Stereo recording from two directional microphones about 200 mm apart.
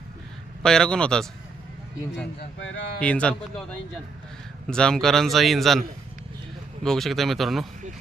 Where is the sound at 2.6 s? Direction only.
65° left (ahead or behind).